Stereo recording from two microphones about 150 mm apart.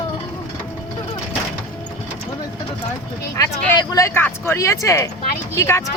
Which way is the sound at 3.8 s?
25° left (ahead or behind).